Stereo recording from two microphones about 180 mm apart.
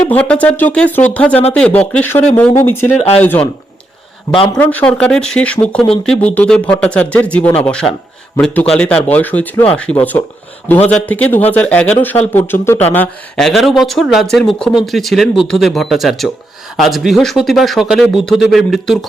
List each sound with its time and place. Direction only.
0.1 s speech: 10° left (ahead or behind)
4.5 s speech: 10° left (ahead or behind)